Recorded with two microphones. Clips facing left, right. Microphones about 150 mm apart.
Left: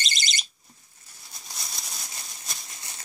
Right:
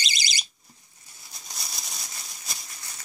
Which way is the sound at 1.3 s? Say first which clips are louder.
Even; centre (ahead or behind).